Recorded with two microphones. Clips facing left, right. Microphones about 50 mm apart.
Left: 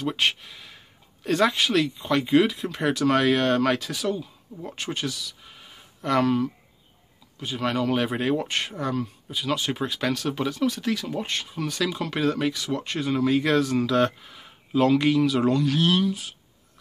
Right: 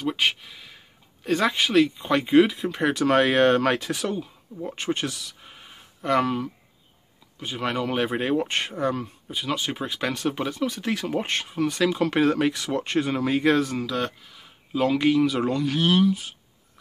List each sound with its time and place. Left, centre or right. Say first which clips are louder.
0.0 s speech: even; centre
2.9 s speech: even; right
5.4 s a sound: right 1 dB; centre
7.3 s speech: left 1 dB; centre
9.4 s speech: left 1 dB; centre
10.9 s speech: right 2 dB; right
13.7 s speech: left 6 dB; centre
14.2 s a sound: left 3 dB; centre
14.7 s speech: left 1 dB; centre